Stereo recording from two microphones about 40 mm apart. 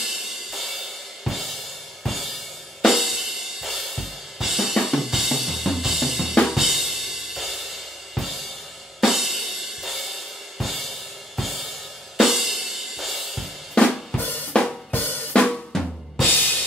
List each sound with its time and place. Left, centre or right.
0.0 s music: centre
1.2 s drum kit: centre
2.0 s music: centre
14.1 s drum kit: left
14.9 s drum: left
15.3 s drum kit: left